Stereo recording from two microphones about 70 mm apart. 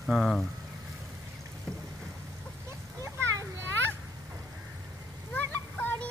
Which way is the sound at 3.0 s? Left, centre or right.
Right.